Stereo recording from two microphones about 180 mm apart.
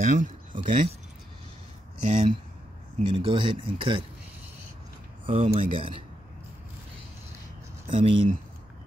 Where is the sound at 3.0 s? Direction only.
30° right (ahead or behind).